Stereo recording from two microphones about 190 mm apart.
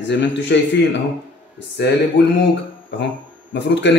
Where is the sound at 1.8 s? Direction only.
65° left (ahead or behind).